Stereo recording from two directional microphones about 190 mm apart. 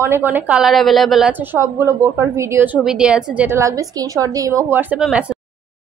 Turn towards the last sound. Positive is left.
turn(degrees=-5)  # may be behind; listen again after turning